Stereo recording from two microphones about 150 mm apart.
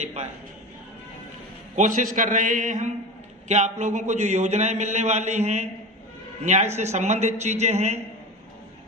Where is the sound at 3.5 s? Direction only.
50° right (ahead or behind).